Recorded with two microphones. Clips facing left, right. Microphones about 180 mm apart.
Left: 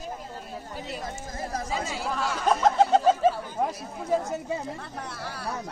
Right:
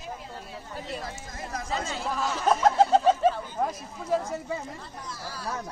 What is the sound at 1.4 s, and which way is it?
Speech, 35° left (ahead or behind).